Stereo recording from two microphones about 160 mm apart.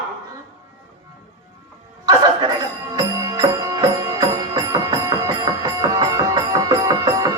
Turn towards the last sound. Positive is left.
turn(degrees=-25)  # may be behind; listen again after turning